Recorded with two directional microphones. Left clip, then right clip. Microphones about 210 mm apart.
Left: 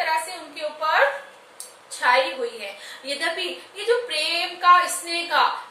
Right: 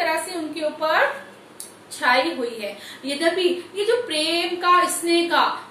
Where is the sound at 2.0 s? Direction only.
Centre (ahead or behind).